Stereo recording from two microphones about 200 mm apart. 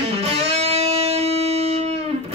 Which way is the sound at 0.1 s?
30° right (ahead or behind).